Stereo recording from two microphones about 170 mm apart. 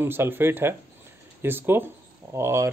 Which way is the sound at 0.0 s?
15° right (ahead or behind).